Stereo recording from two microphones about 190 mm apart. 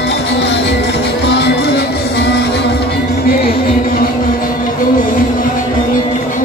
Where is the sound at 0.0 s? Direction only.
65° left (ahead or behind).